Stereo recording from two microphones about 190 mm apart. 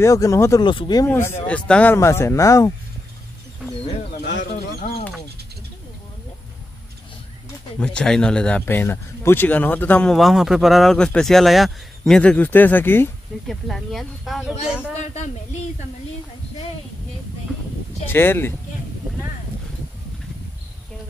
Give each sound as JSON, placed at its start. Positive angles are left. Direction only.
{"t": 0.0, "sound": "speech", "side_deg": 15}
{"t": 1.0, "sound": "speech", "side_deg": 10}
{"t": 4.2, "sound": "speech", "side_deg": 65}
{"t": 7.8, "sound": "speech", "side_deg": 5}
{"t": 13.5, "sound": "speech", "side_deg": 0}
{"t": 15.0, "sound": "a child's voice", "side_deg": 40}
{"t": 18.0, "sound": "speech", "side_deg": 10}